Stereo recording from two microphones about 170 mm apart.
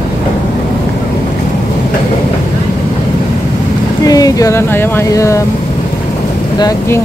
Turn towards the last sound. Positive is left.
turn(degrees=20)  # may be behind; listen again after turning